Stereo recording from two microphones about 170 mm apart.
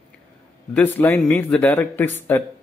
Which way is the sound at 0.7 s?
10° left (ahead or behind).